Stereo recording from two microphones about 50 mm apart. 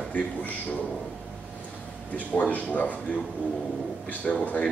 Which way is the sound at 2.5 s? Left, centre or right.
Left.